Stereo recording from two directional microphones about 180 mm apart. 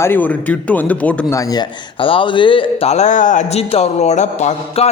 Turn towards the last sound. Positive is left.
turn(degrees=40)  # may be behind; listen again after turning